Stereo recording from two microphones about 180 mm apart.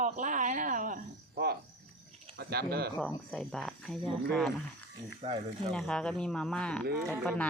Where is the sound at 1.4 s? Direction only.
60° right (ahead or behind).